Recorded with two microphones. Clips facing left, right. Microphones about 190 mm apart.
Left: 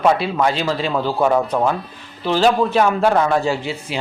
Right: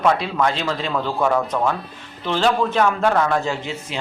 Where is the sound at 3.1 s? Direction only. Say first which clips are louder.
Left 2 dB; 20° left (ahead or behind).